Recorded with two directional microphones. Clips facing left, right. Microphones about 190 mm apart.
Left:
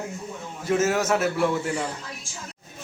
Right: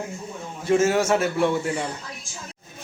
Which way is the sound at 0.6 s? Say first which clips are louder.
Right 3 dB; centre (ahead or behind).